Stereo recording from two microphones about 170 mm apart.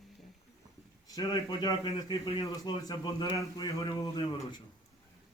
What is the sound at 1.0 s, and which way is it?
A man's voice, 20° left (ahead or behind).